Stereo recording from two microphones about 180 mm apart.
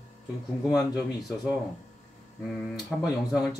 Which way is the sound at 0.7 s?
20° left (ahead or behind).